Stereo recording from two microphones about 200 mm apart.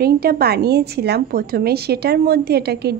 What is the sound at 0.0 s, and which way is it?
A woman's voice, 50° right (ahead or behind).